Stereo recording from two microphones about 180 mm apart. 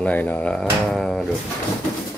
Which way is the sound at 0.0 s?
10° left (ahead or behind).